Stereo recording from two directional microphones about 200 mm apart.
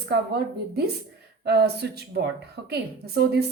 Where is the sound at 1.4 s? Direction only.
55° right (ahead or behind).